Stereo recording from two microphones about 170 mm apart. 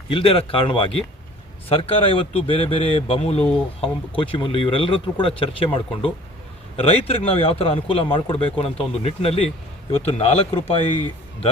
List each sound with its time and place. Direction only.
0.1 s a man's voice: 30° left (ahead or behind)